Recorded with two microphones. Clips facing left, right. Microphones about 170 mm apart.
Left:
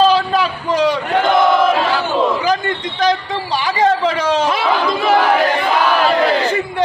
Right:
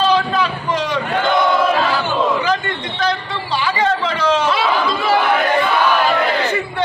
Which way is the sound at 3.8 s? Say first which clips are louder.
Left 4 dB; 40° left (ahead or behind).